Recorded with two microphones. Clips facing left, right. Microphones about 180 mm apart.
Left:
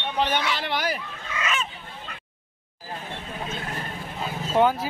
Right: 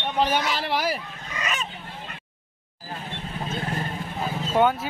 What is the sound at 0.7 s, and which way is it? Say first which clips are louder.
Speech: right 2 dB; 10° right (ahead or behind).